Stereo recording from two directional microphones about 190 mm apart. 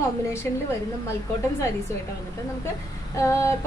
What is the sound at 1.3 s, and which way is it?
Speech, 15° left (ahead or behind).